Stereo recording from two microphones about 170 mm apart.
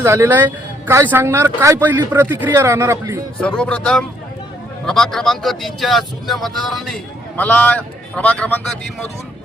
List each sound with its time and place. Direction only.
0.0 s speech: 15° right (ahead or behind)
3.4 s speech: 5° left (ahead or behind)